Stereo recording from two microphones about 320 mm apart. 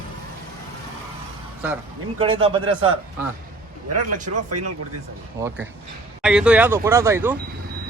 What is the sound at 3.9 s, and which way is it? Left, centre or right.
Speech, right.